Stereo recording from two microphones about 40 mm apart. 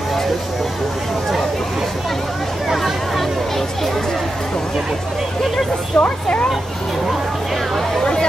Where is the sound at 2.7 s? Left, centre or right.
Centre.